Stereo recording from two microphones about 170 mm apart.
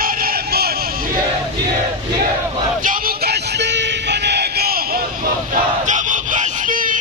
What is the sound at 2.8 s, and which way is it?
Music, 60° right (ahead or behind).